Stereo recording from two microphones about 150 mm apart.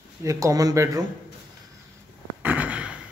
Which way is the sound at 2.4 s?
10° right (ahead or behind).